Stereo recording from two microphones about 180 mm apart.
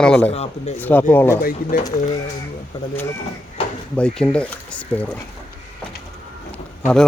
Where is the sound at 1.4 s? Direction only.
55° left (ahead or behind).